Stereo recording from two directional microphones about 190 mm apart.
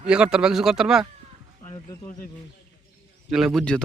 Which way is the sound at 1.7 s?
20° left (ahead or behind).